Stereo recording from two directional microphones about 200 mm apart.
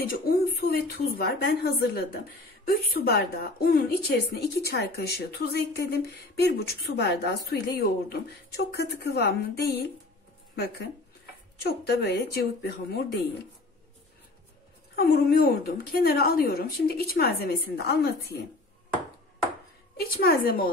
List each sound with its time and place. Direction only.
0.0 s speech: 50° left (ahead or behind)
15.0 s speech: 50° left (ahead or behind)
20.0 s speech: 50° left (ahead or behind)